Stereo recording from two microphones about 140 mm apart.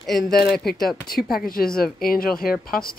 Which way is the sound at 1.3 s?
90° left.